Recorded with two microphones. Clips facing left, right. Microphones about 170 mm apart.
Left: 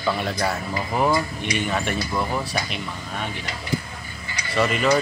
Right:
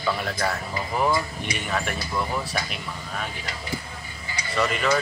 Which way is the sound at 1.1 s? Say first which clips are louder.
Left 3 dB; 25° left (ahead or behind).